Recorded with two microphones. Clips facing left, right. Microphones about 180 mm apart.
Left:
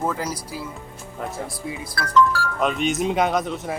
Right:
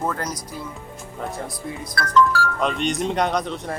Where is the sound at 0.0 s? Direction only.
5° left (ahead or behind).